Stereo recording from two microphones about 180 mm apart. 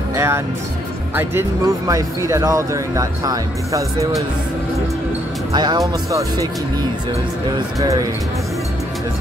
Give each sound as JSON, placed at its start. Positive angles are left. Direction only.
{"t": 0.1, "sound": "music", "side_deg": -15}
{"t": 1.9, "sound": "speech", "side_deg": -15}
{"t": 5.5, "sound": "speech", "side_deg": -25}
{"t": 7.8, "sound": "speech", "side_deg": -20}